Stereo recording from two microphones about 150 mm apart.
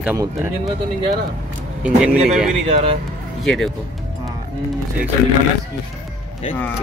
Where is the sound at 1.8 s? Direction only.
5° right (ahead or behind).